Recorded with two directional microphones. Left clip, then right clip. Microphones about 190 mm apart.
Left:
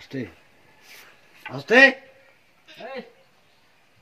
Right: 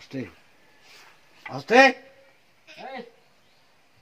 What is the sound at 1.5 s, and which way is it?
Speech, 10° right (ahead or behind).